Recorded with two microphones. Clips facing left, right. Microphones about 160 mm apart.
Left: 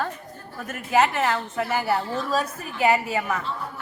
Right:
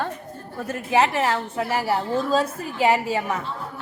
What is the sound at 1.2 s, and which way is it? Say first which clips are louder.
A woman's voice: right 1 dB; 25° right (ahead or behind).